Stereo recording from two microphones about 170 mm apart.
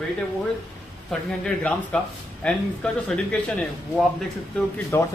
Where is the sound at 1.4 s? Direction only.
5° left (ahead or behind).